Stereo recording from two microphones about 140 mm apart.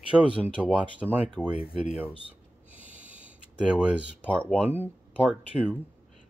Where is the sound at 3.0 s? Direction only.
10° right (ahead or behind).